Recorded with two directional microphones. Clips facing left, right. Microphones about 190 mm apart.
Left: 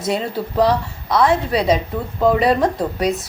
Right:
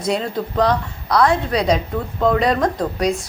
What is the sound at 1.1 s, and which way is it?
Speech, 25° left (ahead or behind).